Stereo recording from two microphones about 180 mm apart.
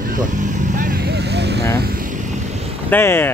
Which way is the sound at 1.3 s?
70° right (ahead or behind).